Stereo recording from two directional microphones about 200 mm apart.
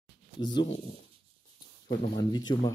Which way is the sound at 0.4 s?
20° left (ahead or behind).